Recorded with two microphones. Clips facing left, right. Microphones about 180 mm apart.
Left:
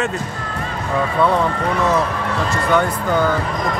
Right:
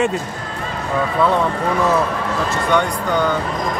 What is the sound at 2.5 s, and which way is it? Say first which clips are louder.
Speech: left 1 dB; 5° left (ahead or behind).